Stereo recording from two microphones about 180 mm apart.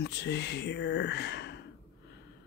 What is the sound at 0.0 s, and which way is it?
Speech, 70° left (ahead or behind).